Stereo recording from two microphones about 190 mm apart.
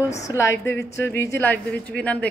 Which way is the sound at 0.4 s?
15° left (ahead or behind).